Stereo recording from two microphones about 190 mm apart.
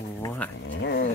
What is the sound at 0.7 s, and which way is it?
Speech, 65° left (ahead or behind).